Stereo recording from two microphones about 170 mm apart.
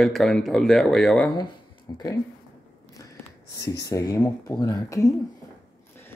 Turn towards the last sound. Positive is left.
turn(degrees=20)  # may be behind; listen again after turning